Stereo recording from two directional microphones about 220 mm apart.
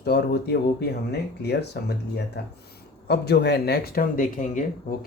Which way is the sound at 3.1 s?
45° left (ahead or behind).